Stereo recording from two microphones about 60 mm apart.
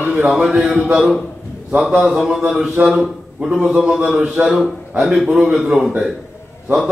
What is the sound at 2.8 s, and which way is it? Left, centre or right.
A man's voice, right.